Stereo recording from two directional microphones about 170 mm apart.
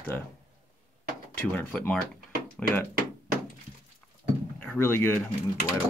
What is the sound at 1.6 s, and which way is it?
Speech, 10° left (ahead or behind).